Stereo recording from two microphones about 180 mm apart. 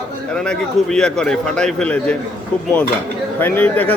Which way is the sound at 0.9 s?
5° left (ahead or behind).